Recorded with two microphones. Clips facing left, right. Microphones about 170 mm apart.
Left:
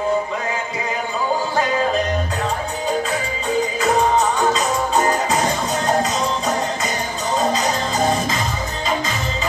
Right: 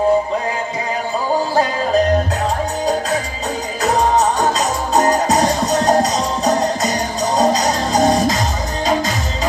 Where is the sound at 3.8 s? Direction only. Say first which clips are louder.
Right 4 dB; 40° right (ahead or behind).